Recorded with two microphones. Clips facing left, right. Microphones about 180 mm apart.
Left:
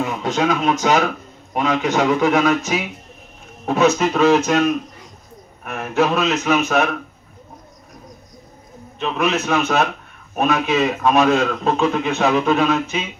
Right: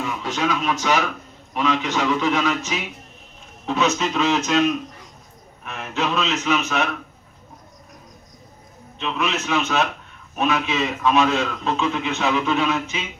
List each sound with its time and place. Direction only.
0.0 s a man's voice: 50° left (ahead or behind)
5.6 s a man's voice: 50° left (ahead or behind)
9.0 s a man's voice: 50° left (ahead or behind)
9.3 s a man's voice: 35° left (ahead or behind)
10.3 s a man's voice: 45° left (ahead or behind)